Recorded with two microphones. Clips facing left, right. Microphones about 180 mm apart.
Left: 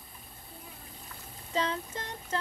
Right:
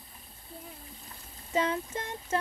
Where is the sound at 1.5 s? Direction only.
20° right (ahead or behind).